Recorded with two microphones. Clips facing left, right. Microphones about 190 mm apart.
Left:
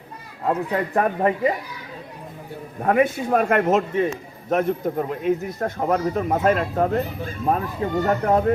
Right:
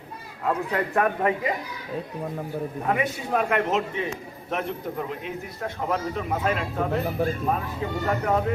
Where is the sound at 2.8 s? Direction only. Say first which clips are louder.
Left 9 dB; 50° left (ahead or behind).